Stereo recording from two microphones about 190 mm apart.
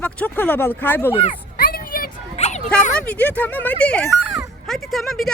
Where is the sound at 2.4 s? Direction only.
35° left (ahead or behind).